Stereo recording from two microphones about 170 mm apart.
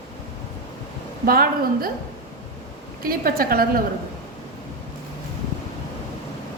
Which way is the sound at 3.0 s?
60° right (ahead or behind).